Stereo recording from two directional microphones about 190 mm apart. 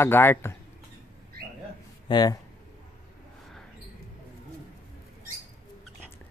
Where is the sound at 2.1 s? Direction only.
20° left (ahead or behind).